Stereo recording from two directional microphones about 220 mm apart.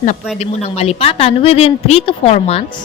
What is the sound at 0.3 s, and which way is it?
A woman's voice, 30° left (ahead or behind).